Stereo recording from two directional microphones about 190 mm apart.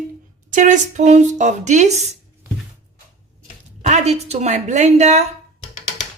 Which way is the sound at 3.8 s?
35° right (ahead or behind).